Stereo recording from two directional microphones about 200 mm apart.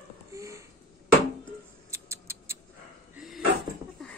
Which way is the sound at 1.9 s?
15° right (ahead or behind).